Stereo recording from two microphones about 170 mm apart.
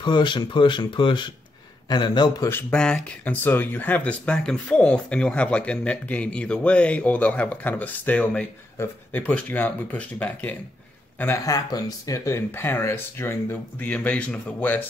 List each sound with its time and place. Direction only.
0.0 s speech: 25° left (ahead or behind); by 14.9 s 10° left (ahead or behind)